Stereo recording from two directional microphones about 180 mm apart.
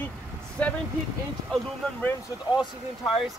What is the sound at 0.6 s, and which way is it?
Speech, 10° left (ahead or behind).